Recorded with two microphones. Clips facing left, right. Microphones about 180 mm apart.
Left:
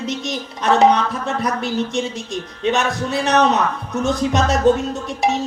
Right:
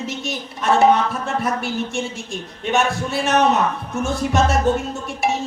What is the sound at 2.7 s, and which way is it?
Speech, 20° left (ahead or behind).